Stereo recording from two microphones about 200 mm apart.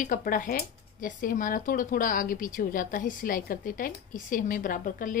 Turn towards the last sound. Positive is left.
turn(degrees=40)  # may be behind; listen again after turning